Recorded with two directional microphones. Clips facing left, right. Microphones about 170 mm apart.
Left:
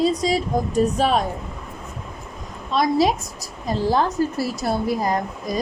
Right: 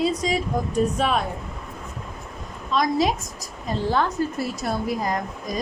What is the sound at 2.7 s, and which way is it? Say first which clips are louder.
A woman's voice: left 3 dB; 35° left (ahead or behind).